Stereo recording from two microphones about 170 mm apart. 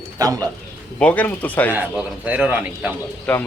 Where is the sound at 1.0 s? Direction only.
10° left (ahead or behind).